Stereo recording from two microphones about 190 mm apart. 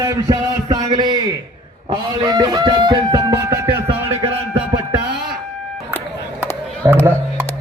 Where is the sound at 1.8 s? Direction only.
25° right (ahead or behind).